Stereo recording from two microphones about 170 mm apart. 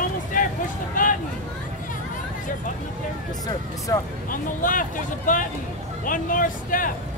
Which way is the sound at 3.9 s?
20° left (ahead or behind).